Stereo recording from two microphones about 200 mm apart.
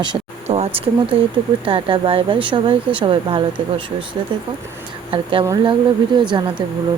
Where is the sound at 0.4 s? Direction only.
30° right (ahead or behind).